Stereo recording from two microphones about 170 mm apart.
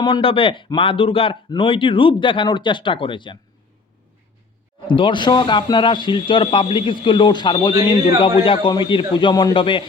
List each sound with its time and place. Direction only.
0.0 s speech: 30° left (ahead or behind)
4.9 s a man's voice: 30° left (ahead or behind)